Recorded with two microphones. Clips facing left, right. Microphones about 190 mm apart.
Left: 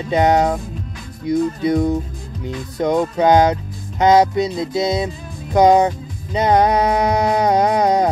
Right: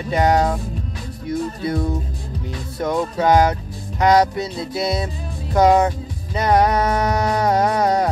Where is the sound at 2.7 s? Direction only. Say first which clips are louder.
Left 4 dB; 20° left (ahead or behind).